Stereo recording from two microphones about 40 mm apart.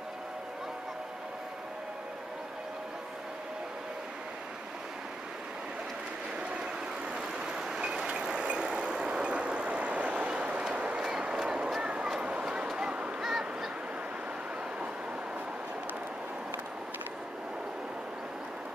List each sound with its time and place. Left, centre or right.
7.2 s vehicle: centre
11.0 s vehicle: centre
11.8 s a sound: right
12.7 s honk: right
13.2 s goose: centre